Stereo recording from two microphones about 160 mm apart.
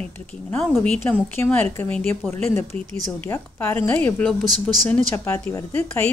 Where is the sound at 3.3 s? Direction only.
15° left (ahead or behind).